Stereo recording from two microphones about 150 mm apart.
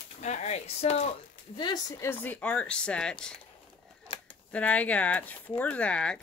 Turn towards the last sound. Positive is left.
turn(degrees=5)  # may be behind; listen again after turning